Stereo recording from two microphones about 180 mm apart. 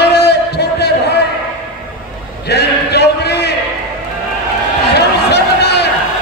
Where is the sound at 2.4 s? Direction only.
65° left (ahead or behind).